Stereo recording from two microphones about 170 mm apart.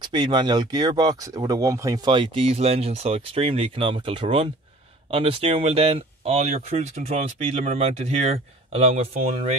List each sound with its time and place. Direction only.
0.0 s speech: 25° right (ahead or behind)